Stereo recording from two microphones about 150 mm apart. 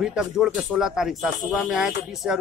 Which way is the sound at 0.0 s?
5° right (ahead or behind).